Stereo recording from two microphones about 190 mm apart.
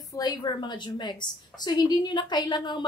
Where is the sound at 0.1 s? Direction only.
20° left (ahead or behind).